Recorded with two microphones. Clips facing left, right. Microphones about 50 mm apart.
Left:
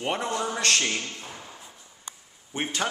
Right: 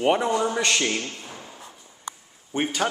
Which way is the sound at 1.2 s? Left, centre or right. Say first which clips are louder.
Right 1 dB; centre.